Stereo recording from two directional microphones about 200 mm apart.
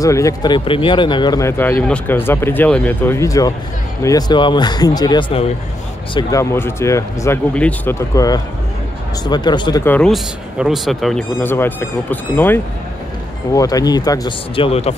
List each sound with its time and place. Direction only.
0.0 s speech: 15° left (ahead or behind)
9.8 s speech: 5° left (ahead or behind); by 15.0 s 30° left (ahead or behind)